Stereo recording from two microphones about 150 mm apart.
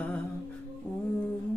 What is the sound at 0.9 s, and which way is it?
Humming, 10° left (ahead or behind).